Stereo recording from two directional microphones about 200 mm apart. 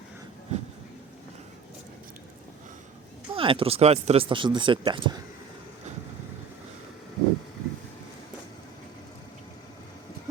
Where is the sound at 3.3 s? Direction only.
25° right (ahead or behind).